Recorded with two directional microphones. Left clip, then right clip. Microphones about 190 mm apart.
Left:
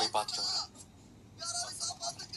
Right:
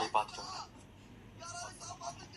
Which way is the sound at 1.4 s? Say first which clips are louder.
Left 7 dB; 55° left (ahead or behind).